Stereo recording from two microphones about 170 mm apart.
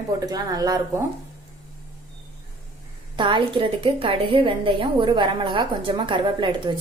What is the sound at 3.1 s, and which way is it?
A woman's voice, 30° right (ahead or behind).